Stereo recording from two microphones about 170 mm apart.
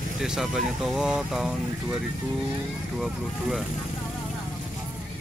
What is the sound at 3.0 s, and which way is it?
Speech, centre (ahead or behind).